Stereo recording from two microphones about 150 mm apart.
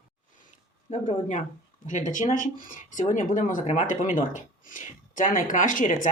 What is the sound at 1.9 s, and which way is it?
A woman's voice, 55° left (ahead or behind).